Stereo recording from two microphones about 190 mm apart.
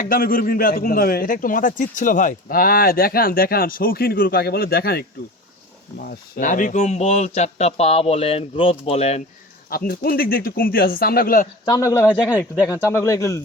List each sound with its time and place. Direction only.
0.0 s a man's voice: 50° left (ahead or behind); by 9.2 s 35° left (ahead or behind)
9.6 s a man's voice: 50° left (ahead or behind)
11.6 s speech: 20° left (ahead or behind)